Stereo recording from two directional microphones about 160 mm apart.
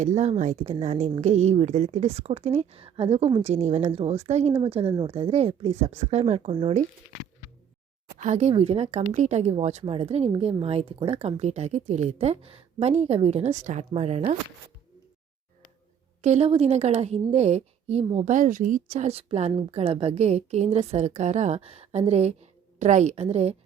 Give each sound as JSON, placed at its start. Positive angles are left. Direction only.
{"t": 0.0, "sound": "a woman's voice", "side_deg": -45}
{"t": 8.2, "sound": "a woman's voice", "side_deg": -45}
{"t": 16.2, "sound": "a woman's voice", "side_deg": -40}